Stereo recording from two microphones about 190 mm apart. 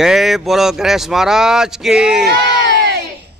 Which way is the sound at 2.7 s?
60° right (ahead or behind).